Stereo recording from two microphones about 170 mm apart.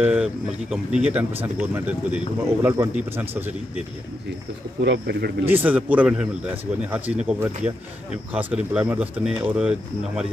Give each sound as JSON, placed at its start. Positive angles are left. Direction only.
{"t": 0.0, "sound": "speech", "side_deg": -5}
{"t": 4.8, "sound": "speech", "side_deg": -80}
{"t": 5.4, "sound": "speech", "side_deg": -10}